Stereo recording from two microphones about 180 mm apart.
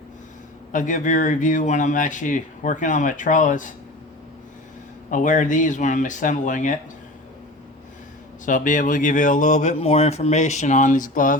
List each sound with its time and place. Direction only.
0.7 s speech: 45° left (ahead or behind)
5.1 s speech: 45° left (ahead or behind)
8.4 s speech: 45° left (ahead or behind)